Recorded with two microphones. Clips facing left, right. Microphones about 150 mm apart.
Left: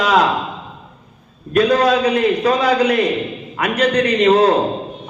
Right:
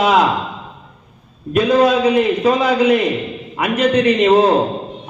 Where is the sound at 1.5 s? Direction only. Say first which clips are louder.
Right 1 dB; 25° right (ahead or behind).